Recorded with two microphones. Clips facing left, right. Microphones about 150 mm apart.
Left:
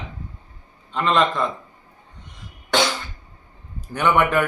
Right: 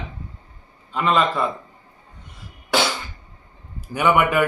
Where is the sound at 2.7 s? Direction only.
5° right (ahead or behind).